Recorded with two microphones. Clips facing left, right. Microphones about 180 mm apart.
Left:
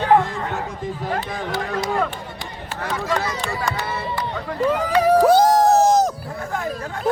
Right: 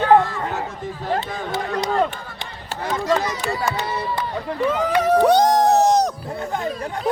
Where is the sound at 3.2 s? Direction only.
15° right (ahead or behind).